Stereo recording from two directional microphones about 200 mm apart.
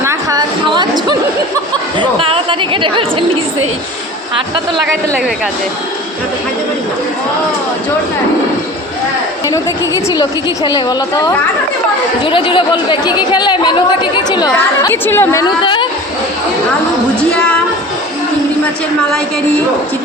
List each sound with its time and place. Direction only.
0.0 s a sound: 15° right (ahead or behind)
2.0 s speech: 25° right (ahead or behind)
10.2 s speech: 20° left (ahead or behind)